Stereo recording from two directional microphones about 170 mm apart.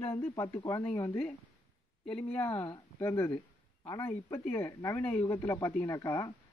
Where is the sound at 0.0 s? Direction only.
15° left (ahead or behind).